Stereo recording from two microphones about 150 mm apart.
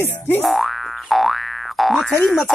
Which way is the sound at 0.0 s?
15° left (ahead or behind).